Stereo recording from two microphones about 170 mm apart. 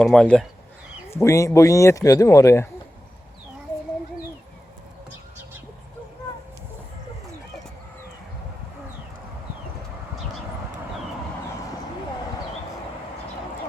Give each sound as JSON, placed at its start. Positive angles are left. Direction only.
{"t": 0.0, "sound": "speech", "side_deg": 5}
{"t": 1.1, "sound": "a man's voice", "side_deg": 20}